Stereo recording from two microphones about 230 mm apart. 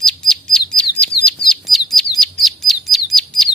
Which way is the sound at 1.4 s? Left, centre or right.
Centre.